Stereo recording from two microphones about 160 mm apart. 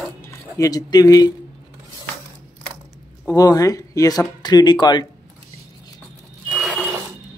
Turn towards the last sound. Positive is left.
turn(degrees=-5)  # may be behind; listen again after turning